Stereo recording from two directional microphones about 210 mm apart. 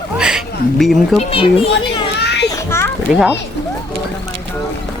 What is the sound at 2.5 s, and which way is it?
Children playing, 10° left (ahead or behind).